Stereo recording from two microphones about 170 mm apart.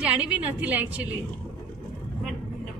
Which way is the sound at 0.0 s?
5° right (ahead or behind).